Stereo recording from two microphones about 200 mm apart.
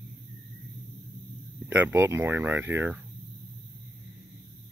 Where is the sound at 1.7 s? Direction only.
10° right (ahead or behind).